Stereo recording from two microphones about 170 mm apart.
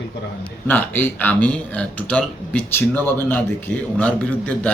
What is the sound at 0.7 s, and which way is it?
Speech, 10° left (ahead or behind).